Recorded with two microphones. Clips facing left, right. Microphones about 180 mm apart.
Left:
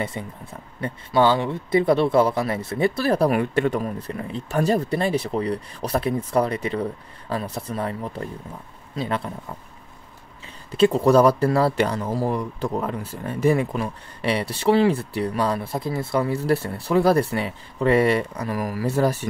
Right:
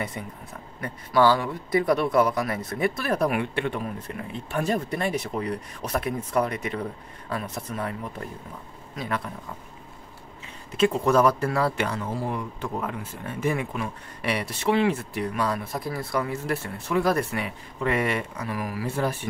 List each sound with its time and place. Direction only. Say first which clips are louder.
0.0 s speech: left 4 dB; 25° left (ahead or behind)
10.7 s speech: left 5 dB; 35° left (ahead or behind)